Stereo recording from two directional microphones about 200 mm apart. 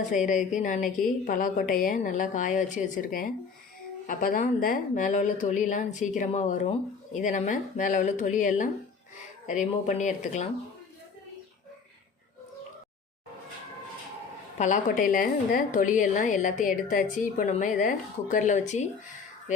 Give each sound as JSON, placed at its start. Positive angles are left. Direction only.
{"t": 0.3, "sound": "a woman's voice", "side_deg": 40}
{"t": 14.6, "sound": "a woman's voice", "side_deg": 40}